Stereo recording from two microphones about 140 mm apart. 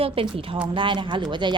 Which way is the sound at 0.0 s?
40° right (ahead or behind).